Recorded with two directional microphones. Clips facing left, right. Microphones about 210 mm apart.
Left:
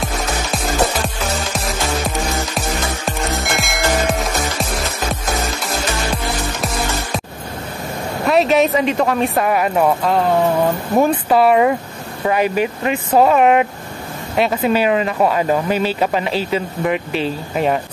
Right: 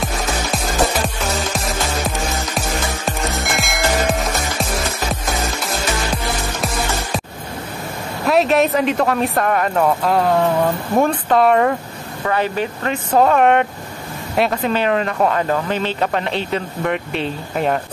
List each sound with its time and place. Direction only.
2.0 s music: centre (ahead or behind)
8.3 s speech: centre (ahead or behind)